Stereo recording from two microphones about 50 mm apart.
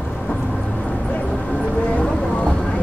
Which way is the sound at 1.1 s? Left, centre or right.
Left.